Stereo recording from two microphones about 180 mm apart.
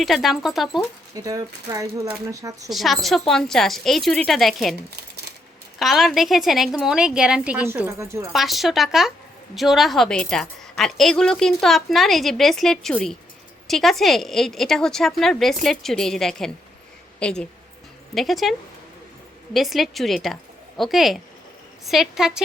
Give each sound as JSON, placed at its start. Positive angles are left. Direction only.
{"t": 0.0, "sound": "a woman's voice", "side_deg": 0}
{"t": 1.1, "sound": "speech", "side_deg": -20}
{"t": 2.6, "sound": "a woman's voice", "side_deg": 0}
{"t": 5.8, "sound": "a woman's voice", "side_deg": 0}
{"t": 8.3, "sound": "a woman's voice", "side_deg": 0}
{"t": 19.5, "sound": "a woman's voice", "side_deg": 0}